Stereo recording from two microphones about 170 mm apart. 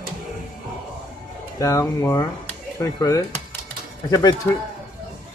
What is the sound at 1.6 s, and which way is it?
A man's voice, 20° left (ahead or behind).